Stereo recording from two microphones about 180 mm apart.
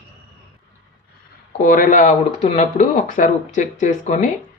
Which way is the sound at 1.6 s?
50° left (ahead or behind).